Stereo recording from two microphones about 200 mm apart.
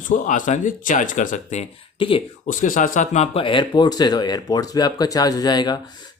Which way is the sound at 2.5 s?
40° left (ahead or behind).